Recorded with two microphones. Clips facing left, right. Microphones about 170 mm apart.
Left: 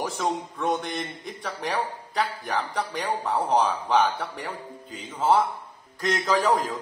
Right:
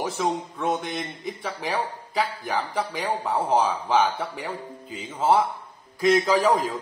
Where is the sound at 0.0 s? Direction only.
5° right (ahead or behind).